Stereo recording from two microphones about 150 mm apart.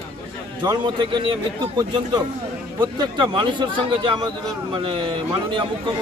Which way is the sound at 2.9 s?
30° right (ahead or behind).